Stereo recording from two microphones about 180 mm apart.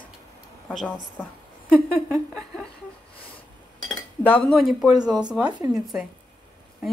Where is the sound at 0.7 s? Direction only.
5° left (ahead or behind).